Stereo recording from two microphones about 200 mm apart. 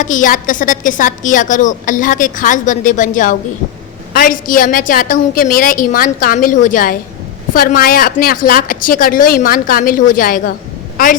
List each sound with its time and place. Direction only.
0.0 s a woman's voice: 40° left (ahead or behind)